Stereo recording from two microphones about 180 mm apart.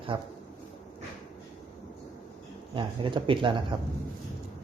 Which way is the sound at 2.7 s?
25° right (ahead or behind).